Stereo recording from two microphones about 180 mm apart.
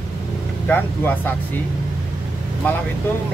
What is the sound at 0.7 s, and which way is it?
Speech, 10° left (ahead or behind).